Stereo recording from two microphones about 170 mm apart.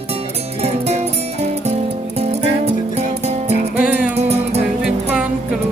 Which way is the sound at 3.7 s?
5° right (ahead or behind).